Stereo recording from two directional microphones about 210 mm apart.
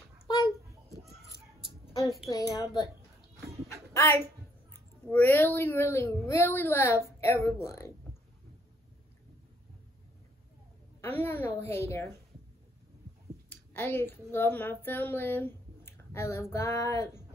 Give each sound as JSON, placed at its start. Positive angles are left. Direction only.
{"t": 0.3, "sound": "a sound", "side_deg": 20}
{"t": 2.3, "sound": "speech", "side_deg": 15}
{"t": 3.9, "sound": "a sound", "side_deg": 15}
{"t": 5.0, "sound": "speech", "side_deg": 10}
{"t": 11.0, "sound": "speech", "side_deg": 10}
{"t": 13.5, "sound": "speech", "side_deg": 10}